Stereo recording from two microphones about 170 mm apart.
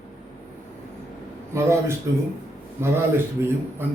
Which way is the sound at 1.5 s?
15° right (ahead or behind).